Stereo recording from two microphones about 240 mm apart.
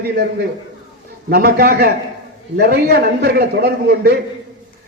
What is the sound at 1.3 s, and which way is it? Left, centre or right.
A man's voice, right.